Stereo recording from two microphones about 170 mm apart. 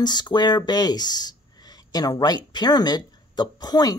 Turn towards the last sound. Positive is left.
turn(degrees=25)  # may be behind; listen again after turning